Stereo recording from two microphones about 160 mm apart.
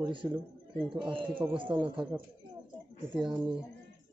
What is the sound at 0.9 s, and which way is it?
Speech, 30° right (ahead or behind).